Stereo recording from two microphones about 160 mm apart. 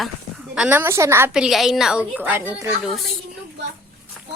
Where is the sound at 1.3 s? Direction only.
5° right (ahead or behind).